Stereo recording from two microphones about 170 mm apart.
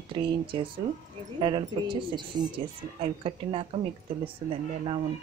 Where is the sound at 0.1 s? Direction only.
30° right (ahead or behind).